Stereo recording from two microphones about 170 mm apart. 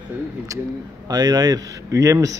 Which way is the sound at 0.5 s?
20° right (ahead or behind).